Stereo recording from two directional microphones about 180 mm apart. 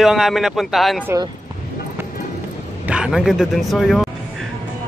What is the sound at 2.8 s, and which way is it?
Speech, 5° right (ahead or behind).